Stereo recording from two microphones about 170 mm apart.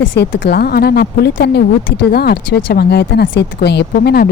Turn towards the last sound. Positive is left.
turn(degrees=65)  # may be behind; listen again after turning